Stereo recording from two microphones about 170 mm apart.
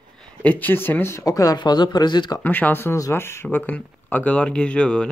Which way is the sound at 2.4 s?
10° left (ahead or behind).